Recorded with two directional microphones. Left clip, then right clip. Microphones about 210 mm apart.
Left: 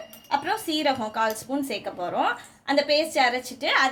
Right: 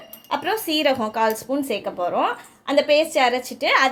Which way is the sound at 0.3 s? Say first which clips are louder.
Right 3 dB; 30° right (ahead or behind).